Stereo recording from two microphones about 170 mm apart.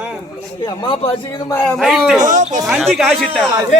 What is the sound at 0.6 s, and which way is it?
A man's voice, 30° left (ahead or behind).